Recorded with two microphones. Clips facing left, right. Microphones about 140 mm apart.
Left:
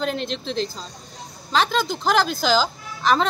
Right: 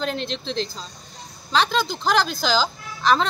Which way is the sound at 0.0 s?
5° left (ahead or behind).